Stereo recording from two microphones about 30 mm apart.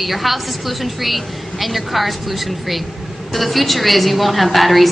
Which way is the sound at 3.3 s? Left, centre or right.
Centre.